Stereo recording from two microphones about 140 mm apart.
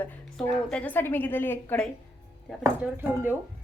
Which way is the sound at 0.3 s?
5° left (ahead or behind).